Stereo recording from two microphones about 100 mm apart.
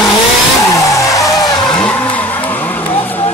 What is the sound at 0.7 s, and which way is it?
Vehicle, 35° left (ahead or behind).